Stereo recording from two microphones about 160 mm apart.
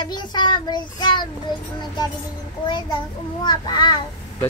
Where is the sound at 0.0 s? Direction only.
30° left (ahead or behind).